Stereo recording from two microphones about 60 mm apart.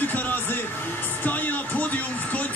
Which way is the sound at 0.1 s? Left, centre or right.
Left.